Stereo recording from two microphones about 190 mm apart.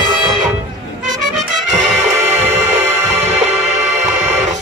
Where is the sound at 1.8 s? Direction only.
35° right (ahead or behind).